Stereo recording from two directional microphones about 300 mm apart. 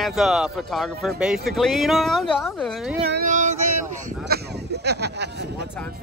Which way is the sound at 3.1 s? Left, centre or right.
Right.